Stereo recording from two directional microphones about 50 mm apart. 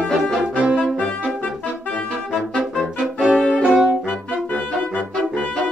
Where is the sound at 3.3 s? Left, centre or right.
Centre.